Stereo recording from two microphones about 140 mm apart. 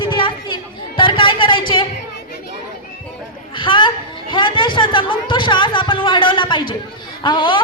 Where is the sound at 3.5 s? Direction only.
35° left (ahead or behind).